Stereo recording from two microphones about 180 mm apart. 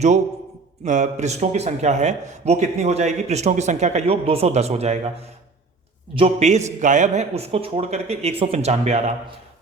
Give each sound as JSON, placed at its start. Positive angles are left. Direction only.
{"t": 0.9, "sound": "a man's voice", "side_deg": -40}
{"t": 6.1, "sound": "a man's voice", "side_deg": -35}